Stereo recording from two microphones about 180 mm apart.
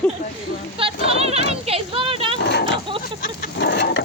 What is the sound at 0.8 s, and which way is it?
Speech, 30° right (ahead or behind).